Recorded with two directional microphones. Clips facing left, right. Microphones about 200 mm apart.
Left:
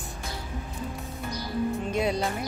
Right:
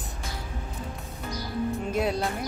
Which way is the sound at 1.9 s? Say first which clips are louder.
Right 1 dB; 5° right (ahead or behind).